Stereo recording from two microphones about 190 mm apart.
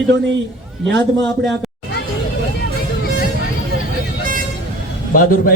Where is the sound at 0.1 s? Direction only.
70° right (ahead or behind).